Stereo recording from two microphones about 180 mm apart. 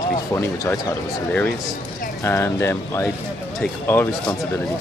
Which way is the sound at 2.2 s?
15° left (ahead or behind).